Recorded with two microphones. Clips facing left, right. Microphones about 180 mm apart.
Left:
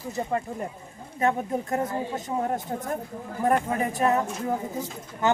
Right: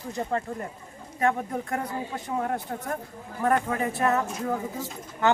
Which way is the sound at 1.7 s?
25° left (ahead or behind).